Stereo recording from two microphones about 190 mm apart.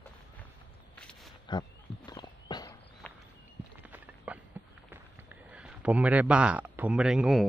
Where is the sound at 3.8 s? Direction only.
10° right (ahead or behind).